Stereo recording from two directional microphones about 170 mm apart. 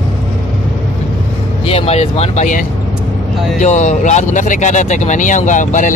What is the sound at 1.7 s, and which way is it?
Speech, 35° left (ahead or behind).